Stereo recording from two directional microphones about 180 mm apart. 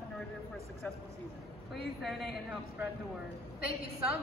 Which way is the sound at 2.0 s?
Centre (ahead or behind).